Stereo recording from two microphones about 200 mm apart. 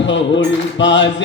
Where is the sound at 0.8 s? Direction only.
65° left (ahead or behind).